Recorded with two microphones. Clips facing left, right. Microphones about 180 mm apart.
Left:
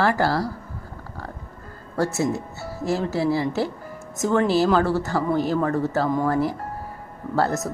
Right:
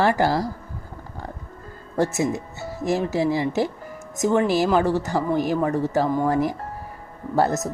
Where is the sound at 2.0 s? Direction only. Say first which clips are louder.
Right 1 dB; 20° right (ahead or behind).